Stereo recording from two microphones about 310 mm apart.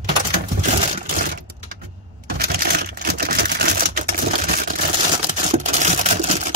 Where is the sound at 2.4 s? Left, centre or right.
Right.